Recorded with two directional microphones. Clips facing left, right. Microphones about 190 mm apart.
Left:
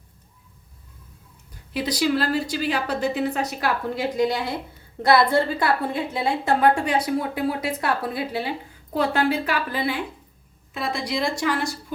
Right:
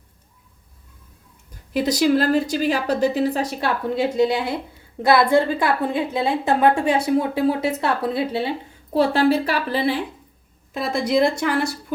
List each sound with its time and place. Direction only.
1.7 s a woman's voice: 45° right (ahead or behind)
10.8 s speech: 50° right (ahead or behind)